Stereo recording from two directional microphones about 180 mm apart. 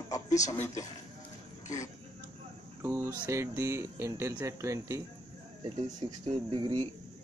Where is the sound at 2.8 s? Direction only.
15° right (ahead or behind).